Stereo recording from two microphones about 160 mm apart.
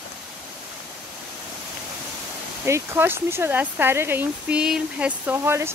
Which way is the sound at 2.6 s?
15° right (ahead or behind).